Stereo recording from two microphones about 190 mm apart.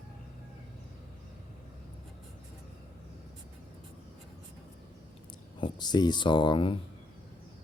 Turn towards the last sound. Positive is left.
turn(degrees=25)  # may be behind; listen again after turning